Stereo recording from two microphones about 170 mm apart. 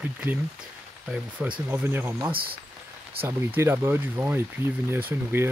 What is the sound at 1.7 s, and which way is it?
Speech, 15° right (ahead or behind).